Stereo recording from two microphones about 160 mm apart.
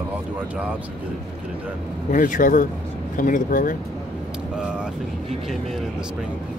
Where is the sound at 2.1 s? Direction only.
55° left (ahead or behind).